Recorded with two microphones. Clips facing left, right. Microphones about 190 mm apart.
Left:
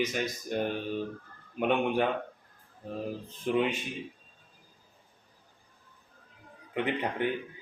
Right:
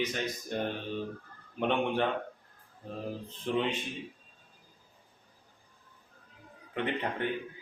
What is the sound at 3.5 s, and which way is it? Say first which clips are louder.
Speech: left 3 dB; 10° left (ahead or behind).